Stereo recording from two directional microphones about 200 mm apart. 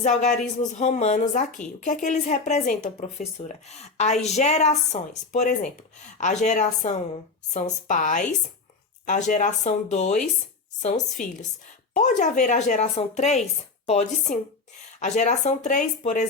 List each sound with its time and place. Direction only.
0.0 s speech: 35° left (ahead or behind)